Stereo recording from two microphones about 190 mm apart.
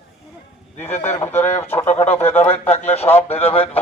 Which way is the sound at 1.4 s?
10° left (ahead or behind).